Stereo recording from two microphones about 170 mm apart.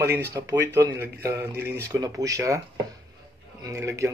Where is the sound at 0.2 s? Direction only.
15° right (ahead or behind).